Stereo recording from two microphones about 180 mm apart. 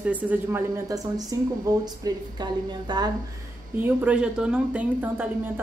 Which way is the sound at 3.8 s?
5° right (ahead or behind).